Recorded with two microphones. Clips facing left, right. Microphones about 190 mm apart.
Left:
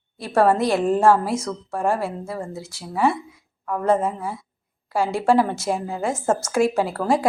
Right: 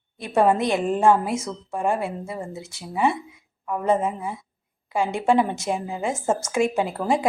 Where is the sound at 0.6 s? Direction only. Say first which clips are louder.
Left 2 dB; 5° left (ahead or behind).